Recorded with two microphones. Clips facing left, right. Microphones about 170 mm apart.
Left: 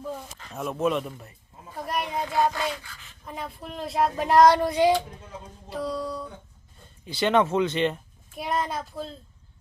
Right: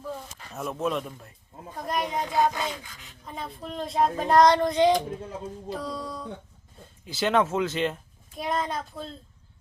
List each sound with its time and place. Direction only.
0.5 s speech: centre (ahead or behind)
1.7 s a sound: 5° left (ahead or behind)
2.1 s music: 20° right (ahead or behind)
3.2 s speech: 5° left (ahead or behind)